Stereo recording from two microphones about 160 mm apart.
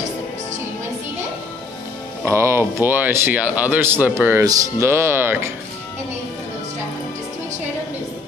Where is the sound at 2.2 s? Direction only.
15° right (ahead or behind).